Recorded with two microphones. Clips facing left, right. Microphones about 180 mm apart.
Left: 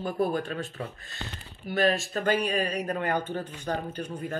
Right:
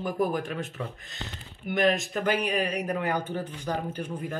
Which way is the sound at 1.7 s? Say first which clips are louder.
Right 1 dB; 20° right (ahead or behind).